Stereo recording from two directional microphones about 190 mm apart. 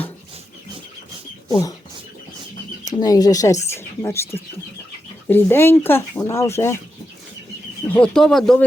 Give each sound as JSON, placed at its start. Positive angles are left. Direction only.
{"t": 1.5, "sound": "speech", "side_deg": 20}
{"t": 3.0, "sound": "speech", "side_deg": 20}
{"t": 5.3, "sound": "speech", "side_deg": 10}
{"t": 7.9, "sound": "speech", "side_deg": 5}